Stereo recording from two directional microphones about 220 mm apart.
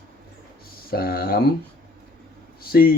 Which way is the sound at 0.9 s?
45° left (ahead or behind).